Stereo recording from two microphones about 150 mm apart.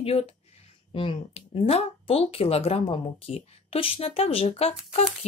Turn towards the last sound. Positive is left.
turn(degrees=45)  # may be behind; listen again after turning